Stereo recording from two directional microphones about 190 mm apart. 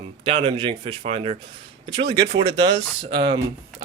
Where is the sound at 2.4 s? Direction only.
25° right (ahead or behind).